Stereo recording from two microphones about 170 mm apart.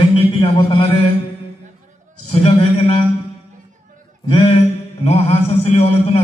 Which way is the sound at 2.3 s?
35° left (ahead or behind).